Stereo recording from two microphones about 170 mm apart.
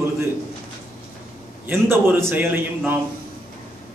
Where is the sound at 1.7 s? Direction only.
15° right (ahead or behind).